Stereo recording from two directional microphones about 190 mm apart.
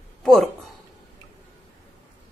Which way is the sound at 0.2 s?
Centre (ahead or behind).